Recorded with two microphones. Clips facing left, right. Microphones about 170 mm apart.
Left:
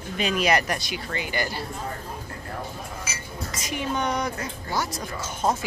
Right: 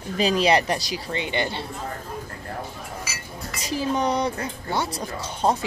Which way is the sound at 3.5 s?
35° right (ahead or behind).